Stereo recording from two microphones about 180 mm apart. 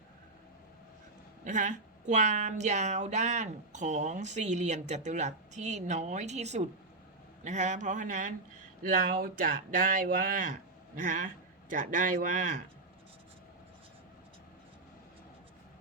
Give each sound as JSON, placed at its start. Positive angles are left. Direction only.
{"t": 1.5, "sound": "speech", "side_deg": -45}